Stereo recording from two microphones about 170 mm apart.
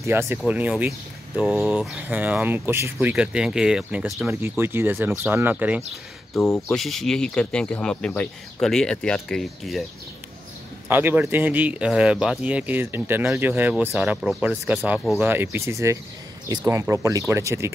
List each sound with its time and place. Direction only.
0.0 s speech: 15° right (ahead or behind)
6.7 s speech: centre (ahead or behind)
10.9 s speech: 10° right (ahead or behind)